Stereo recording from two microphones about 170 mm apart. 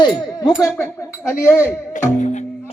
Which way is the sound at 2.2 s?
45° left (ahead or behind).